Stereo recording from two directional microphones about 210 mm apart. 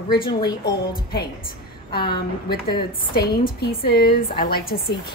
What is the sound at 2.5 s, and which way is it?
A woman's voice, 45° left (ahead or behind).